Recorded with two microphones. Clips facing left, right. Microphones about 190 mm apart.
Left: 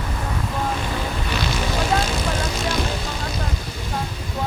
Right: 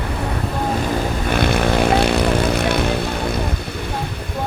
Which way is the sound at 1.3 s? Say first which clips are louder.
Right 10 dB; 55° right (ahead or behind).